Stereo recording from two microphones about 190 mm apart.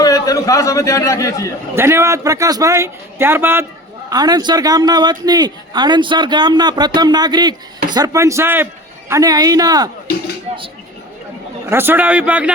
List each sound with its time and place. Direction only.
0.0 s a man's voice: 20° left (ahead or behind)
1.7 s a man's voice: 15° right (ahead or behind)
11.7 s a man's voice: 10° right (ahead or behind)